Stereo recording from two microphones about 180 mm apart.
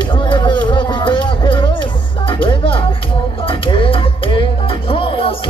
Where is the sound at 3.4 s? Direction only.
30° left (ahead or behind).